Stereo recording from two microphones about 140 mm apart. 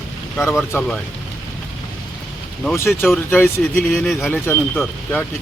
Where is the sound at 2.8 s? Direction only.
15° left (ahead or behind); by 4.3 s centre (ahead or behind).